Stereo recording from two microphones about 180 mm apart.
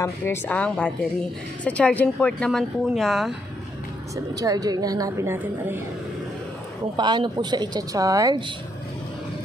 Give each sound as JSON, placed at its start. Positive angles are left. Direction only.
{"t": 0.0, "sound": "a woman's voice", "side_deg": 10}
{"t": 4.4, "sound": "a woman's voice", "side_deg": -20}
{"t": 7.0, "sound": "a woman's voice", "side_deg": -25}